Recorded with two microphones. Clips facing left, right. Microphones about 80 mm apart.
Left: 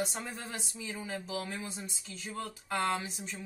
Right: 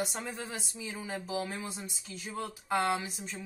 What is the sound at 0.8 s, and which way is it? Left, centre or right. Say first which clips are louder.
Speech: even; centre.